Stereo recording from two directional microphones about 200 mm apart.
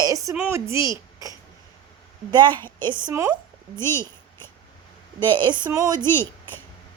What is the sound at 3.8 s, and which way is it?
Speech, 10° left (ahead or behind).